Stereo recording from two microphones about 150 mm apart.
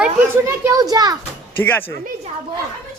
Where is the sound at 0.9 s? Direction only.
25° right (ahead or behind).